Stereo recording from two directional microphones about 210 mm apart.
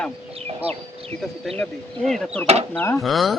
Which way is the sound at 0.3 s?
30° right (ahead or behind).